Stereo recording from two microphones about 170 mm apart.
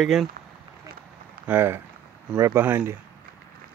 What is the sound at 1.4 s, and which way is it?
Speech, 15° right (ahead or behind).